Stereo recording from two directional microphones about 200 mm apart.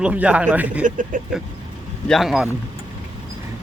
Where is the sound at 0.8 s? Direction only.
40° right (ahead or behind).